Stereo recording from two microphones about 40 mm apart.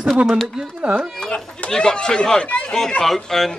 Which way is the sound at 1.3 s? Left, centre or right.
Left.